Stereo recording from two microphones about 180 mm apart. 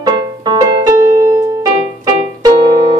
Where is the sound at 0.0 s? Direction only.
20° right (ahead or behind).